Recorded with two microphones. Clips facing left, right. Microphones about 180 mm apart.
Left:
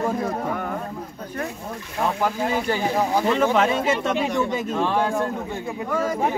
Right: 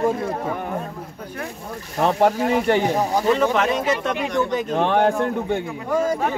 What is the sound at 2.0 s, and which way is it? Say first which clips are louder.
Speech: right 5 dB; 70° right (ahead or behind).